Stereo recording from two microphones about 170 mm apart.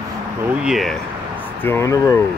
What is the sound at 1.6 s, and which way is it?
Speech, 15° left (ahead or behind).